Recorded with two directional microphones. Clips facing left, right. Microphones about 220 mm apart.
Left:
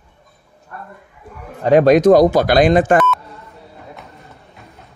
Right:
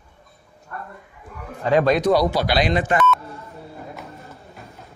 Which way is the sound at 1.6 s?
45° left (ahead or behind).